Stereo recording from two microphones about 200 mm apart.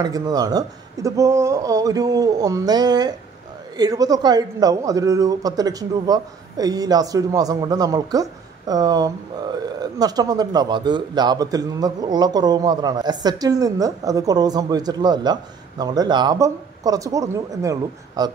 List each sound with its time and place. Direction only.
0.0 s speech: 20° right (ahead or behind)